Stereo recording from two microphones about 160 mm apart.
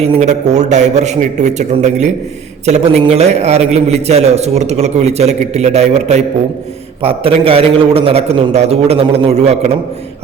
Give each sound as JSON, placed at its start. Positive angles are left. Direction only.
{"t": 0.0, "sound": "a man's voice", "side_deg": -40}